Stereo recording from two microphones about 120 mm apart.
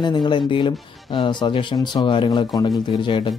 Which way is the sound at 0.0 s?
40° left (ahead or behind).